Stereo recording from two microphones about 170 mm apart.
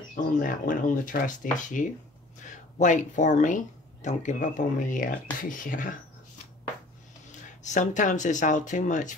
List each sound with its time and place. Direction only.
0.1 s speech: 55° left (ahead or behind)
7.6 s speech: 45° left (ahead or behind)